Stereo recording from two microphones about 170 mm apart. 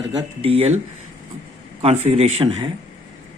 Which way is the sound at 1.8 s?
40° right (ahead or behind).